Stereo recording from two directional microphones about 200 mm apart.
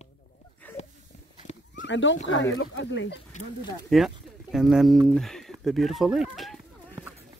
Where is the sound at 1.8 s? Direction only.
70° left (ahead or behind).